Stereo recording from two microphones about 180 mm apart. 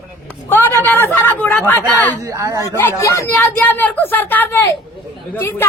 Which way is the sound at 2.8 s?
15° left (ahead or behind).